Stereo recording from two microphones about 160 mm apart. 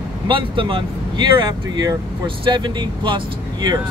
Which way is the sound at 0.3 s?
30° right (ahead or behind).